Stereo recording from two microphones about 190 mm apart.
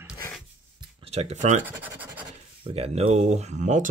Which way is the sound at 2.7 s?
30° right (ahead or behind).